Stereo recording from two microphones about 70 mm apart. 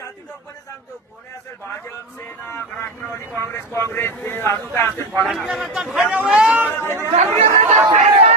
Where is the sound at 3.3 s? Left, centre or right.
Left.